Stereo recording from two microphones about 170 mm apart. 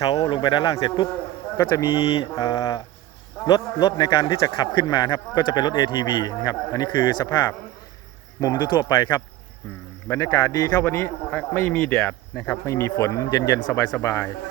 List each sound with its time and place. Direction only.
0.0 s a man's voice: 20° left (ahead or behind)
2.3 s a man's voice: 20° left (ahead or behind)
9.6 s a man's voice: 10° left (ahead or behind)